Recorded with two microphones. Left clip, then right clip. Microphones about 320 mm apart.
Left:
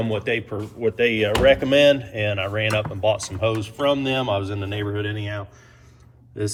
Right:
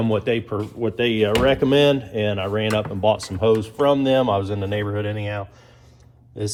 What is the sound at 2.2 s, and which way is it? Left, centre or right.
Speech, right.